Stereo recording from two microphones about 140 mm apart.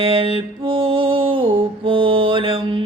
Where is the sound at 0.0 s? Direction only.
40° right (ahead or behind).